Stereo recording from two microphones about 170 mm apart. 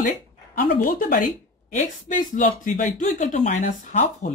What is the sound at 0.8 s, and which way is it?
Speech, 55° left (ahead or behind).